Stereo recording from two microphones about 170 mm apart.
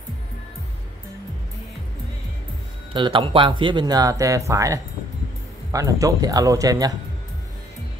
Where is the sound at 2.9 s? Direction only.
30° right (ahead or behind).